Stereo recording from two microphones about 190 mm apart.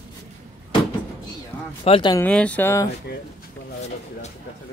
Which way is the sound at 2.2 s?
5° left (ahead or behind).